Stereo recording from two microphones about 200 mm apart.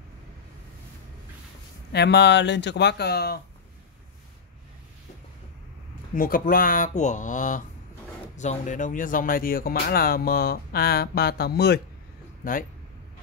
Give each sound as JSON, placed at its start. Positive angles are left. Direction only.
{"t": 1.9, "sound": "speech", "side_deg": 55}
{"t": 6.1, "sound": "speech", "side_deg": 45}